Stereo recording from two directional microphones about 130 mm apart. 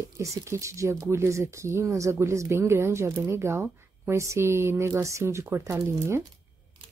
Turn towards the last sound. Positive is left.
turn(degrees=-20)  # may be behind; listen again after turning